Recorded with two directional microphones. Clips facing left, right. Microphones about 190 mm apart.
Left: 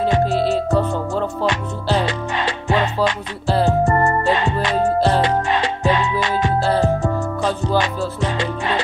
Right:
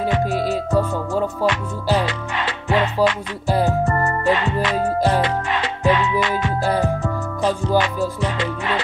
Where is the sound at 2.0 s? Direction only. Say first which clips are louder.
Left 2 dB; 30° left (ahead or behind).